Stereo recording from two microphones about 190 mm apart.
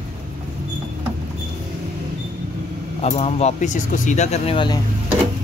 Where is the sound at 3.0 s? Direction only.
35° left (ahead or behind).